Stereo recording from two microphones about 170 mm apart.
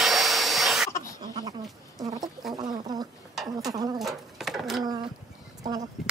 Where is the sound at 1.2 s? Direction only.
20° right (ahead or behind).